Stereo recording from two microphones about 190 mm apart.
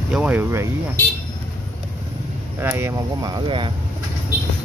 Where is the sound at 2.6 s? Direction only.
15° right (ahead or behind).